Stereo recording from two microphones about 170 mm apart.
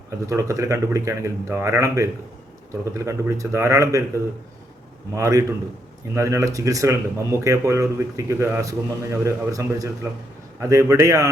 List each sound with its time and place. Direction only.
0.3 s a man's voice: 20° right (ahead or behind)